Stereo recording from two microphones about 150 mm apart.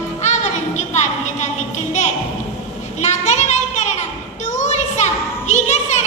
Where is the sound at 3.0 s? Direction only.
50° left (ahead or behind).